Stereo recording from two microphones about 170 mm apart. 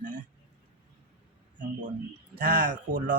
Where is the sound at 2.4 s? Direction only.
50° right (ahead or behind).